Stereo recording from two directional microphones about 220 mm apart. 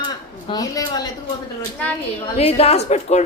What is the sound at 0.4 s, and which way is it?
Speech, 15° left (ahead or behind).